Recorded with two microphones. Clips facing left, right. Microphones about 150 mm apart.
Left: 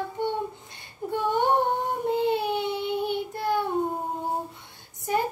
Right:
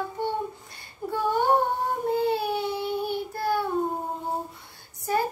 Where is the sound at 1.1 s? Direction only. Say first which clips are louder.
Even; 20° left (ahead or behind).